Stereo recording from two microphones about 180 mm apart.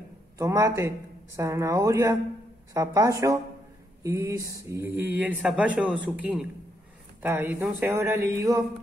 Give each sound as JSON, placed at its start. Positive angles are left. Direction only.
{"t": 0.4, "sound": "speech", "side_deg": -15}